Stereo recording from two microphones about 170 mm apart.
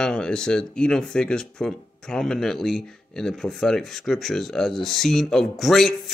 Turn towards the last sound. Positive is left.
turn(degrees=0)  # may be behind; listen again after turning